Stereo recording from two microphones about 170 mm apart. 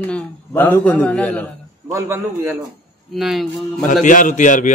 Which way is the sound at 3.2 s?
Centre (ahead or behind).